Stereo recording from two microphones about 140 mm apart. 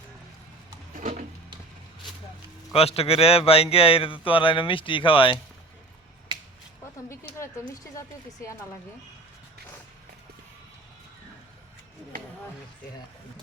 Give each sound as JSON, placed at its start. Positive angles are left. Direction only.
{"t": 2.7, "sound": "speech", "side_deg": 45}
{"t": 7.1, "sound": "speech", "side_deg": 20}